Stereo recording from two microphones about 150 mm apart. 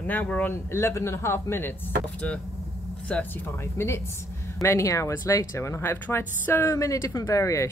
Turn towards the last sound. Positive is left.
turn(degrees=20)  # may be behind; listen again after turning